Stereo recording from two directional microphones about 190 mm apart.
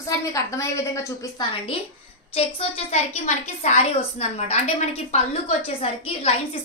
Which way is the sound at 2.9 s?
35° left (ahead or behind).